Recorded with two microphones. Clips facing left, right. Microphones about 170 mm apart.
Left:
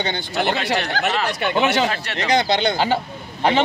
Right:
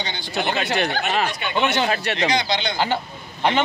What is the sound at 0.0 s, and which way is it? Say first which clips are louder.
Speech: left 4 dB; 55° left (ahead or behind).